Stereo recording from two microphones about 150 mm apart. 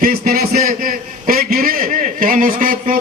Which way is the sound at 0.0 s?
80° right.